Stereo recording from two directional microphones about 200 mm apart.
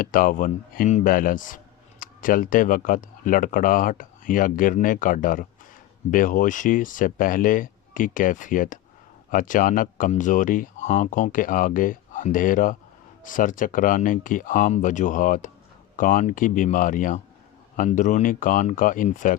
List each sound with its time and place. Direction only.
0.0 s speech: 45° left (ahead or behind)